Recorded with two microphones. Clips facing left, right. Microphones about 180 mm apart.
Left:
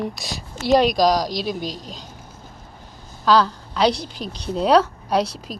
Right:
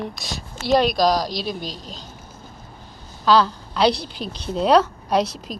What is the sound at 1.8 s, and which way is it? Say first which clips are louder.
Speech: left 1 dB; 10° left (ahead or behind).